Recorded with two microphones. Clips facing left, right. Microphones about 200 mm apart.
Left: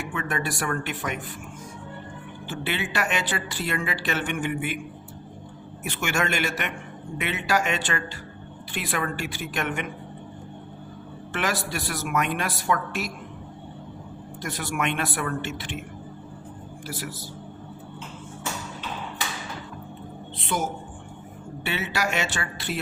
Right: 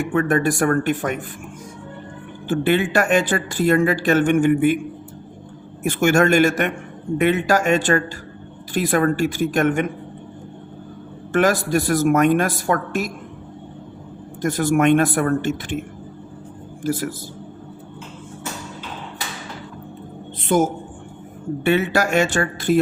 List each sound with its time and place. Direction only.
0.1 s speech: 50° right (ahead or behind)
2.5 s speech: 50° right (ahead or behind)
5.8 s speech: 45° right (ahead or behind)
11.3 s speech: 45° right (ahead or behind)
14.4 s speech: 45° right (ahead or behind)
16.8 s speech: 50° right (ahead or behind)
20.4 s a man's voice: 50° right (ahead or behind)